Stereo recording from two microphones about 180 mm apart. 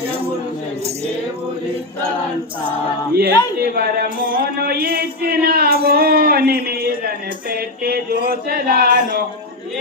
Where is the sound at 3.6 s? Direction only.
60° right (ahead or behind).